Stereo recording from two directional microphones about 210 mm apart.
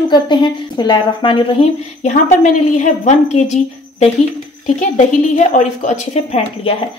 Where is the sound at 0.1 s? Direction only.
20° left (ahead or behind).